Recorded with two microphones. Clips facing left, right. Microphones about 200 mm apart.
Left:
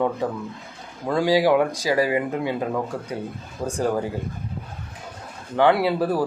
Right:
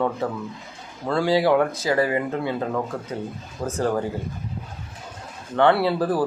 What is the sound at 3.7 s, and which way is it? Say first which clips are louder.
Speech: even; 15° left (ahead or behind).